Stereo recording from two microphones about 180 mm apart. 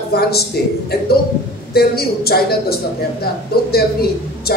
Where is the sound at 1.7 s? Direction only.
60° left (ahead or behind).